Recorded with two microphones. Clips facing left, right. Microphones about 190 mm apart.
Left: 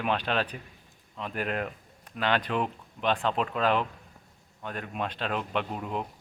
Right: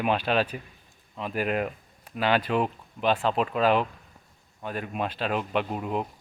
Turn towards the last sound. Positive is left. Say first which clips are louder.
# right 4 dB
turn(degrees=-5)  # may be behind; listen again after turning